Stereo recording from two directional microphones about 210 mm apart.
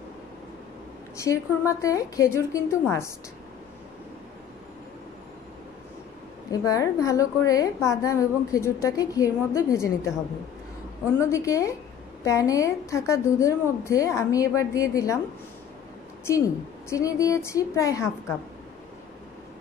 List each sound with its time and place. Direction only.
1.1 s a woman's voice: 15° left (ahead or behind)
6.5 s a woman's voice: 15° left (ahead or behind)
11.1 s a woman's voice: 15° left (ahead or behind)
16.3 s a woman's voice: 15° left (ahead or behind)